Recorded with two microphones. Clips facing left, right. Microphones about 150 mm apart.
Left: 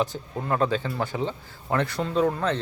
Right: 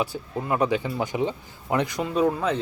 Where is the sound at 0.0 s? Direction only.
10° right (ahead or behind).